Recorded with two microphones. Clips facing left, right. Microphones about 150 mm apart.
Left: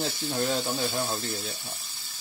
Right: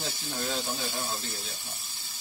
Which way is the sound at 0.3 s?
60° left (ahead or behind).